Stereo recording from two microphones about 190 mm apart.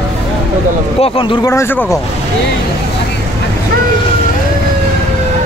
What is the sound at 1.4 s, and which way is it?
Speech, 15° left (ahead or behind).